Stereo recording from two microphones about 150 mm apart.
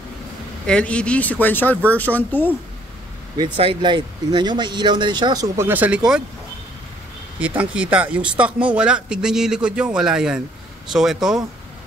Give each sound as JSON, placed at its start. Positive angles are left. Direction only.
{"t": 0.7, "sound": "speech", "side_deg": 5}
{"t": 3.3, "sound": "speech", "side_deg": -35}
{"t": 5.7, "sound": "speech", "side_deg": -10}
{"t": 7.3, "sound": "speech", "side_deg": -10}